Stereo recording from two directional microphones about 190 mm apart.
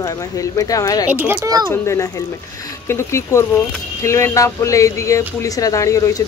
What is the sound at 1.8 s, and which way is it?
Speech, 15° left (ahead or behind).